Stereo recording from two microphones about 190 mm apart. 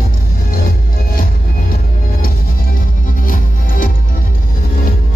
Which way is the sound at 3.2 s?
45° left (ahead or behind).